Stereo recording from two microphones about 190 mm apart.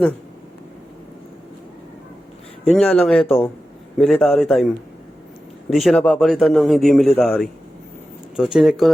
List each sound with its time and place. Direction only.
2.7 s a man's voice: 5° left (ahead or behind)
5.7 s a man's voice: centre (ahead or behind)